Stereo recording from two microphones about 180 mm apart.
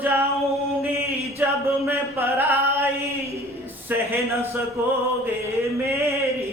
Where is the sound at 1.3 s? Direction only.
15° right (ahead or behind).